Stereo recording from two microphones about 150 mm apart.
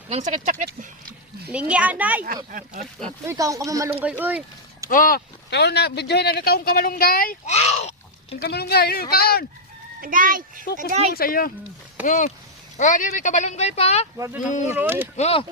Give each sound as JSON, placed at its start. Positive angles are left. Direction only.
{"t": 0.1, "sound": "speech", "side_deg": -50}
{"t": 1.5, "sound": "speech", "side_deg": -10}
{"t": 2.2, "sound": "speech", "side_deg": -65}
{"t": 3.2, "sound": "speech", "side_deg": -20}
{"t": 4.9, "sound": "speech", "side_deg": 70}
{"t": 7.4, "sound": "a sound", "side_deg": 45}
{"t": 8.4, "sound": "speech", "side_deg": 90}
{"t": 10.0, "sound": "a child's voice", "side_deg": -65}
{"t": 11.1, "sound": "speech", "side_deg": 80}
{"t": 12.0, "sound": "speech", "side_deg": 60}
{"t": 14.8, "sound": "speech", "side_deg": -10}
{"t": 15.1, "sound": "speech", "side_deg": 45}